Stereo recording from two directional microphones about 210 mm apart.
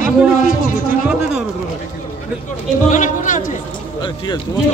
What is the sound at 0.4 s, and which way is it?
Speech, 40° left (ahead or behind).